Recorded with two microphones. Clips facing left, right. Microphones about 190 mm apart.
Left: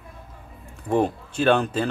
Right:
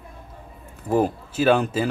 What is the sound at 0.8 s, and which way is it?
Speech, 5° right (ahead or behind).